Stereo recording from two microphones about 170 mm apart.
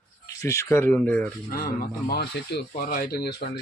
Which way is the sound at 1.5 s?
60° left (ahead or behind).